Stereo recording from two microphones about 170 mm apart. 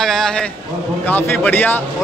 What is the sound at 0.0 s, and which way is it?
A man's voice, 5° left (ahead or behind).